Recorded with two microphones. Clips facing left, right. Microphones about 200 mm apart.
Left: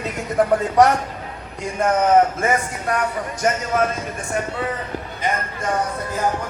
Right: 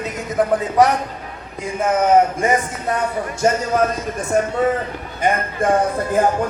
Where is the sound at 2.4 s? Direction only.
15° right (ahead or behind).